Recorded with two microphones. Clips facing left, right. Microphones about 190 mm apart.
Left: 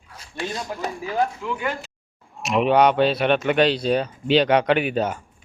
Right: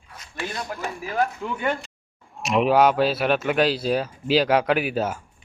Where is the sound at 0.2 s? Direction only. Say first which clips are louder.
Left 2 dB; 30° left (ahead or behind).